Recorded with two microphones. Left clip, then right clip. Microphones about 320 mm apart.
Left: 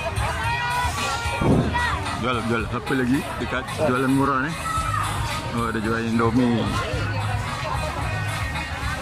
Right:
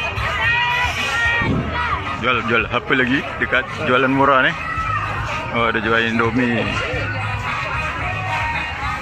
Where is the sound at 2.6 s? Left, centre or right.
Right.